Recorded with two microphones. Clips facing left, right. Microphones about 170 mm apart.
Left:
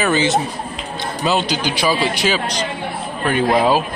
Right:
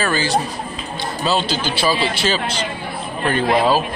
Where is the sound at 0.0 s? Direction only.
20° left (ahead or behind).